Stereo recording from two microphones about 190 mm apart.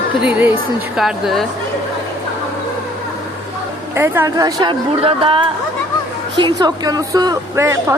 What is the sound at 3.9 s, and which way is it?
Speech, 15° right (ahead or behind).